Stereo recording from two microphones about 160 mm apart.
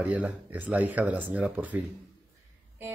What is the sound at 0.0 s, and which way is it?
Speech, 10° right (ahead or behind).